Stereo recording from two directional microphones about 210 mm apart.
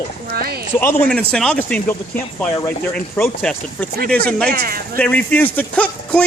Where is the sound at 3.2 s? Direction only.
5° left (ahead or behind).